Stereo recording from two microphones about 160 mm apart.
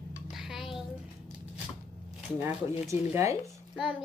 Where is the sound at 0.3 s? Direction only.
Centre (ahead or behind).